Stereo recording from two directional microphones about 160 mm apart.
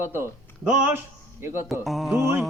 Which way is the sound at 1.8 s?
Centre (ahead or behind).